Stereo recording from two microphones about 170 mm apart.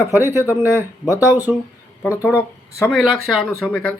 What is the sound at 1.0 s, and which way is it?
Speech, 20° left (ahead or behind).